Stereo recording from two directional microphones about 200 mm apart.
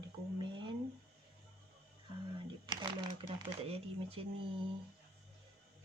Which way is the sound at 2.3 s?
20° right (ahead or behind).